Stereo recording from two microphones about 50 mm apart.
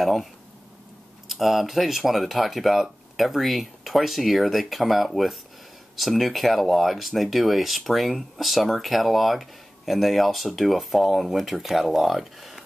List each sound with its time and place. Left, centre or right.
0.0 s speech: centre
1.3 s speech: centre